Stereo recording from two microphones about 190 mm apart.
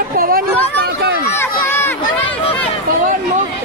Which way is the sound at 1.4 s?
10° left (ahead or behind).